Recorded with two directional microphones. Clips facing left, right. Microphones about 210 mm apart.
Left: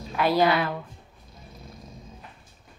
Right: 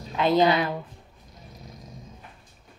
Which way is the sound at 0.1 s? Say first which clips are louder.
Right 1 dB; 20° right (ahead or behind).